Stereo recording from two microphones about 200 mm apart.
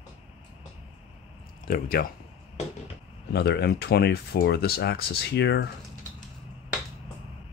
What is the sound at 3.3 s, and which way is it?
Speech, 55° left (ahead or behind).